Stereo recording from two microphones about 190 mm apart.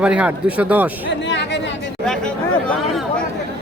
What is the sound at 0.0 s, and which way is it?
Speech, 5° right (ahead or behind).